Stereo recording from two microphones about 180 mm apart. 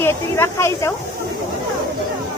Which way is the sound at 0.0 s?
15° left (ahead or behind).